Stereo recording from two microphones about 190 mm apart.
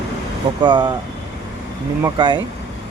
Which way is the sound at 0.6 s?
25° right (ahead or behind).